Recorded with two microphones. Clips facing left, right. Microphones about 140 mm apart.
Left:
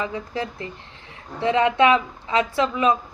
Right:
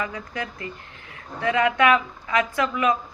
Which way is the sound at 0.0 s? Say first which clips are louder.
Left 3 dB; 25° left (ahead or behind).